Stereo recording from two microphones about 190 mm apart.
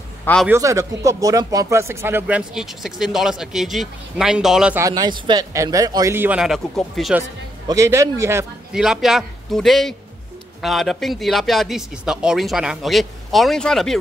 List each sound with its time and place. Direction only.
0.2 s a man's voice: 5° left (ahead or behind)
0.5 s speech: 15° right (ahead or behind)
4.8 s speech: 20° right (ahead or behind); by 7.2 s centre (ahead or behind)
7.6 s speech: 15° right (ahead or behind)
8.7 s speech: 5° right (ahead or behind)